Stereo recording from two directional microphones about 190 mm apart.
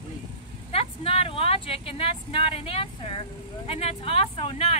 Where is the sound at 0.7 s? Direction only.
30° left (ahead or behind).